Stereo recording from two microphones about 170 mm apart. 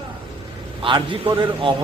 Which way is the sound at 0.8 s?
30° right (ahead or behind).